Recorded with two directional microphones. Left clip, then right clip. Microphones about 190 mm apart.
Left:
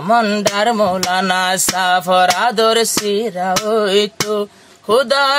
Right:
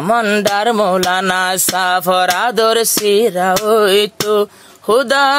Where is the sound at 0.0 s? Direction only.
40° right (ahead or behind).